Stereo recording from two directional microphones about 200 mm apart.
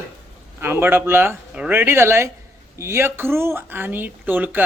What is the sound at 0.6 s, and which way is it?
Speech, 10° right (ahead or behind).